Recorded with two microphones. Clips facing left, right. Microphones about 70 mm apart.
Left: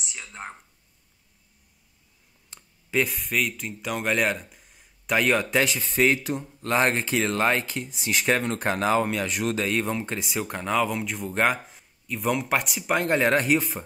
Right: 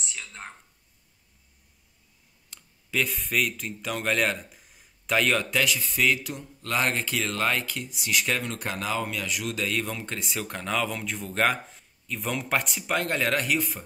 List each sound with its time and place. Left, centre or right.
0.0 s speech: centre
2.5 s clicking: left
3.2 s speech: centre
5.0 s speech: centre
5.5 s speech: left